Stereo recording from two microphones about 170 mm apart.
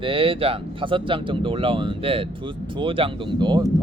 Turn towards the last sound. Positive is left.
turn(degrees=-25)  # may be behind; listen again after turning